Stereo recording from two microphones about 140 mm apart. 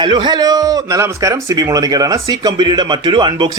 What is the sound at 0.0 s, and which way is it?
Speech, 35° right (ahead or behind).